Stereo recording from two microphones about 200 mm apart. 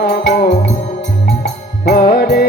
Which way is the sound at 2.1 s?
50° left (ahead or behind).